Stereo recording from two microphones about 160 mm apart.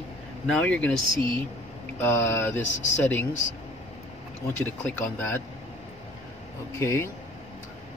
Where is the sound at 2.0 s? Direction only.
10° left (ahead or behind).